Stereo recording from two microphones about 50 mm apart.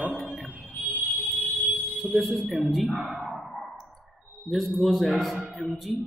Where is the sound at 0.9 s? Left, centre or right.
Left.